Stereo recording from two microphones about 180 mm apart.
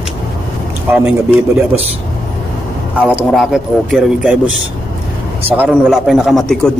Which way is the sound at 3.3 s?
Centre (ahead or behind).